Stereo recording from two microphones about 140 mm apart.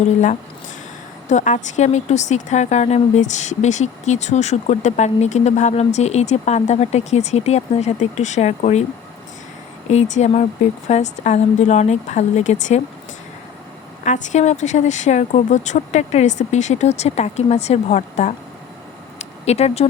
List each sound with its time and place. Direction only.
1.3 s speech: 60° left (ahead or behind)
9.9 s speech: 55° left (ahead or behind)
14.0 s speech: 55° left (ahead or behind)